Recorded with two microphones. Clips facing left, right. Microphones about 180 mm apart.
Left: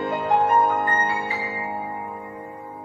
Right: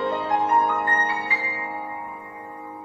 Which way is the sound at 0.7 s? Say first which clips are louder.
Left 2 dB; 30° left (ahead or behind).